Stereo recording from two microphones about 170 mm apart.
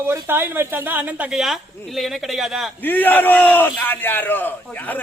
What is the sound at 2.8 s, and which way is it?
A man's voice, 10° left (ahead or behind).